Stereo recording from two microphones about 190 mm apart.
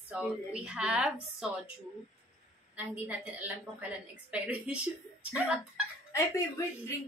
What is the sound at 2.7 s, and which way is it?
A woman's voice, 10° right (ahead or behind).